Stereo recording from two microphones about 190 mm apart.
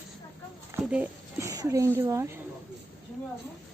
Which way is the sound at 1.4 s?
15° right (ahead or behind).